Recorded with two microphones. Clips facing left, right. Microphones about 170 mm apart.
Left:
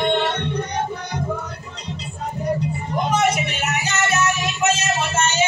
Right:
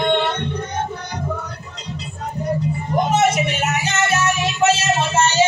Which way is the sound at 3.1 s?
25° right (ahead or behind).